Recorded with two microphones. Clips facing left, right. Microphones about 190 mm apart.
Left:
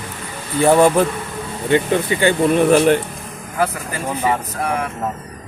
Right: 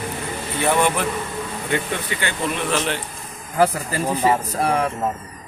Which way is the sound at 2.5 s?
50° left (ahead or behind).